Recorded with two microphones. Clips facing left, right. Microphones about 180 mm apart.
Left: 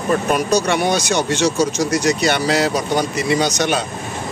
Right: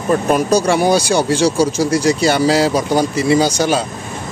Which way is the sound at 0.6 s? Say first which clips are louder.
Right 4 dB; 30° right (ahead or behind).